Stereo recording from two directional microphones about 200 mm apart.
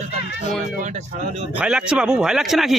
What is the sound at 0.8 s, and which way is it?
Speech, 35° right (ahead or behind).